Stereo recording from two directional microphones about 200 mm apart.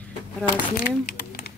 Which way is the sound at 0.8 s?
50° left (ahead or behind).